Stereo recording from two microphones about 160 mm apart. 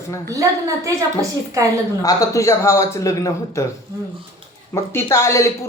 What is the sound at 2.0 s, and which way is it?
A man's voice, 20° left (ahead or behind).